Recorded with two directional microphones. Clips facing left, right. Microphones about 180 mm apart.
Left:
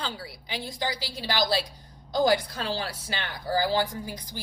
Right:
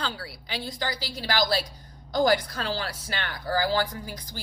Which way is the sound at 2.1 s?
25° left (ahead or behind).